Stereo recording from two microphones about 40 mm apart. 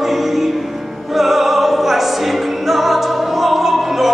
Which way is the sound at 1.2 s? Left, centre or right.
Centre.